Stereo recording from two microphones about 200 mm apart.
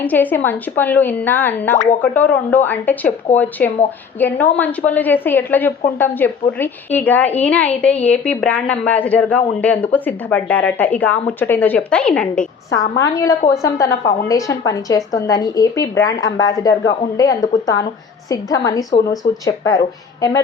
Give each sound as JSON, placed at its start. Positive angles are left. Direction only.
{"t": 0.0, "sound": "a woman's voice", "side_deg": 10}
{"t": 13.0, "sound": "a woman's voice", "side_deg": 15}